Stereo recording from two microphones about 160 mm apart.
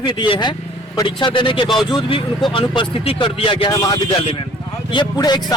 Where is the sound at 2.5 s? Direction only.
30° left (ahead or behind).